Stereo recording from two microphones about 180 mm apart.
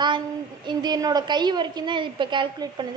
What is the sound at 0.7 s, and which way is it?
A woman's voice, 20° right (ahead or behind).